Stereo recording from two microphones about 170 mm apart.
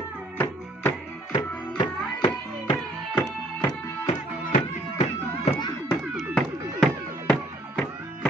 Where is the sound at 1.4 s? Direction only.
30° left (ahead or behind).